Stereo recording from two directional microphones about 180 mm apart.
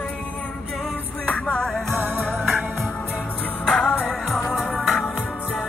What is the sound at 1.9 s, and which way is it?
Music, 10° right (ahead or behind).